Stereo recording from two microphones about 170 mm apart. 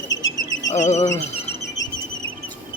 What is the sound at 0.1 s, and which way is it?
Bird, 90° left.